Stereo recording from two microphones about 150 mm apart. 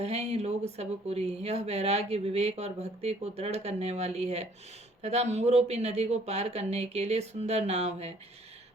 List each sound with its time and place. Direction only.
0.0 s speech: 45° right (ahead or behind)